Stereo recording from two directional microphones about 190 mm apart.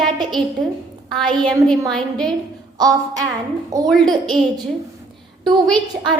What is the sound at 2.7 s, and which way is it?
Speech, 20° right (ahead or behind).